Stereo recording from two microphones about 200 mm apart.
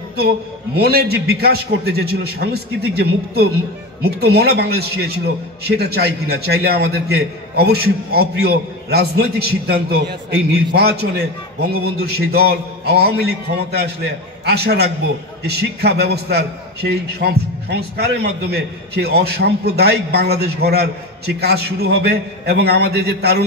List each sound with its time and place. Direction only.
0.7 s a man's voice: 50° right (ahead or behind)